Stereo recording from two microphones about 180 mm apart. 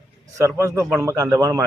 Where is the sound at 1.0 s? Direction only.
15° right (ahead or behind).